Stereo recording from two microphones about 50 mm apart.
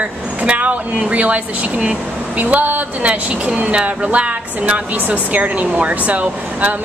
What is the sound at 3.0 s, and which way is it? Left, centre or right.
A woman's voice, right.